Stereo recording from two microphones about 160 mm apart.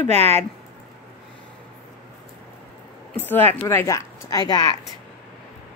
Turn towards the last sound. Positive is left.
turn(degrees=25)  # may be behind; listen again after turning